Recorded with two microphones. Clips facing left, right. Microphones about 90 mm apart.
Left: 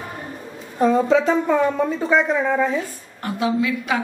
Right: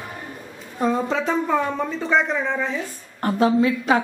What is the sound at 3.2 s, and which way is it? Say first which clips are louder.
Speech: right 3 dB; 40° right (ahead or behind).